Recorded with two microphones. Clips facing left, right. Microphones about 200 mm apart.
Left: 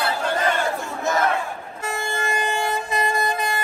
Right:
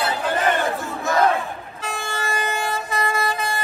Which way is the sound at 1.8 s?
15° left (ahead or behind).